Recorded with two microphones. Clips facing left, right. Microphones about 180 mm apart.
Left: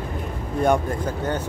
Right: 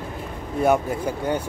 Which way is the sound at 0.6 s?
5° right (ahead or behind).